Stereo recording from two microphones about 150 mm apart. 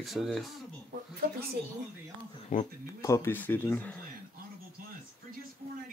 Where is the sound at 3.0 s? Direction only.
20° left (ahead or behind).